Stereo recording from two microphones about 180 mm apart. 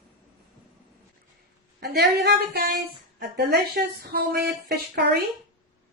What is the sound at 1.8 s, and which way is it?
A woman's voice, 60° right (ahead or behind).